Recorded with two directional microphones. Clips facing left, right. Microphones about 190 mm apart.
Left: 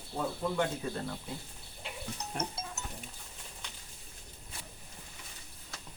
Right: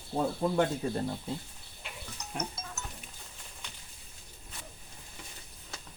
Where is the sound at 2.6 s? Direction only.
30° left (ahead or behind).